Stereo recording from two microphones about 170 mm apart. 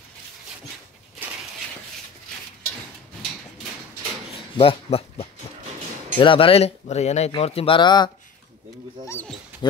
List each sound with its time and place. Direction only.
4.6 s speech: 35° left (ahead or behind)
9.0 s speech: 15° left (ahead or behind)
9.6 s speech: 25° left (ahead or behind)